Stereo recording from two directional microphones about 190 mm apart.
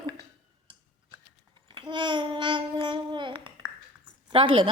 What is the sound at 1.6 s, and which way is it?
Babbling, 25° right (ahead or behind).